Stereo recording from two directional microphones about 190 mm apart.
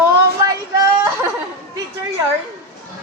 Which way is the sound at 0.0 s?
15° right (ahead or behind).